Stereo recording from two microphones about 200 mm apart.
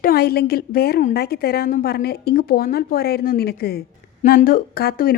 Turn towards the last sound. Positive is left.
turn(degrees=50)  # may be behind; listen again after turning